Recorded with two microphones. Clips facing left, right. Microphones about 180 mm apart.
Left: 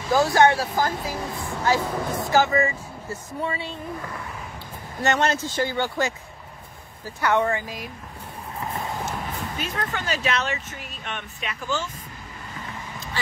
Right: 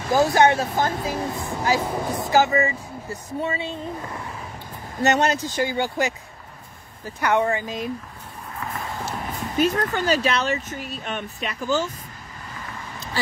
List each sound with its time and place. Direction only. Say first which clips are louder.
0.1 s speech: right 1 dB; 20° right (ahead or behind)
5.0 s speech: right 2 dB; 20° right (ahead or behind)
7.2 s speech: right 1 dB; 15° right (ahead or behind)
9.6 s speech: right 12 dB; 35° right (ahead or behind)